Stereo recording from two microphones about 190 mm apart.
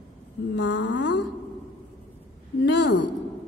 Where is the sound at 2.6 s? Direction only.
65° left (ahead or behind).